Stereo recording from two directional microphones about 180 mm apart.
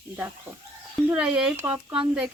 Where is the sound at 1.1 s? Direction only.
5° right (ahead or behind).